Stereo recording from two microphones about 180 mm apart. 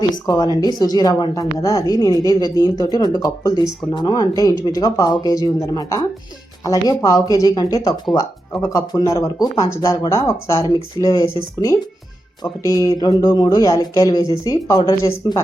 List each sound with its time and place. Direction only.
0.3 s a woman's voice: 20° left (ahead or behind)
12.4 s a woman's voice: 20° left (ahead or behind)